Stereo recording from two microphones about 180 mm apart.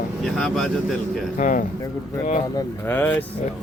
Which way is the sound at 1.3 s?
45° left (ahead or behind).